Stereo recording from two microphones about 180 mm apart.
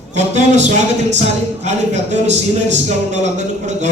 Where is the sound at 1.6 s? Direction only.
40° right (ahead or behind).